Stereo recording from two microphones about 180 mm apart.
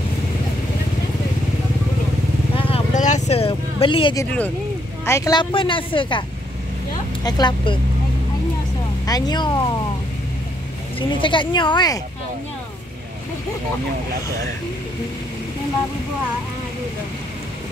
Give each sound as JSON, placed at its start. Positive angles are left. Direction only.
{"t": 2.5, "sound": "vehicle", "side_deg": 30}
{"t": 5.0, "sound": "speech", "side_deg": 15}
{"t": 7.2, "sound": "speech", "side_deg": 25}
{"t": 9.0, "sound": "speech", "side_deg": 20}
{"t": 11.0, "sound": "speech", "side_deg": 30}